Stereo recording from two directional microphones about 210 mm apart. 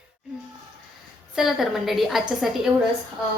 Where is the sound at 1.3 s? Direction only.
Centre (ahead or behind).